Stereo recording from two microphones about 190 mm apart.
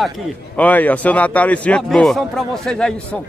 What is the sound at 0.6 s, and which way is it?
A man's voice, 10° left (ahead or behind).